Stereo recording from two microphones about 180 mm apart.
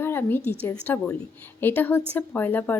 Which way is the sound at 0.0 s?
10° left (ahead or behind).